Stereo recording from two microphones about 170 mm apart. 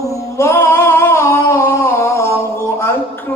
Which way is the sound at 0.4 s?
15° left (ahead or behind).